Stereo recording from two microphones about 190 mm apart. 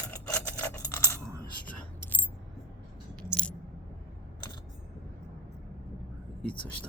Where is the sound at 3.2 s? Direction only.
5° left (ahead or behind).